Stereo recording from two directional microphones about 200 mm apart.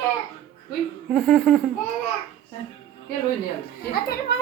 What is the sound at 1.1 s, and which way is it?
Laughter, centre (ahead or behind).